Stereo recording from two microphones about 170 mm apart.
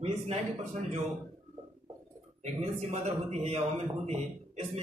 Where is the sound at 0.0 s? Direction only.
40° right (ahead or behind).